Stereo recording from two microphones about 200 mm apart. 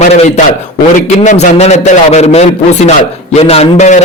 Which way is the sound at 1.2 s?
40° left (ahead or behind).